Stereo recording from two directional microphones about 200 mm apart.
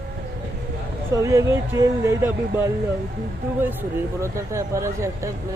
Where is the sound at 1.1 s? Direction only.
15° right (ahead or behind).